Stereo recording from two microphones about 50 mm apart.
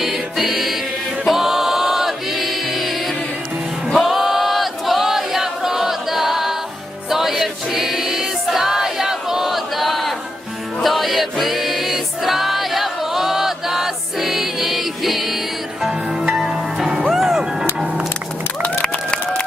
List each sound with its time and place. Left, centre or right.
0.0 s music: centre
1.2 s choir: centre
7.1 s music: centre
16.7 s music: centre
18.6 s a sound: left